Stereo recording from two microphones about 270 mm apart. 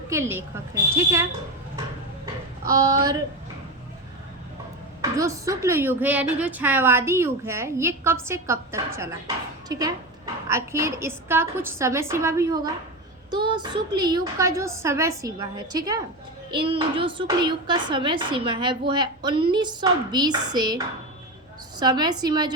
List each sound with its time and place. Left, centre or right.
0.1 s a woman's voice: centre
2.6 s a woman's voice: centre
5.1 s a woman's voice: centre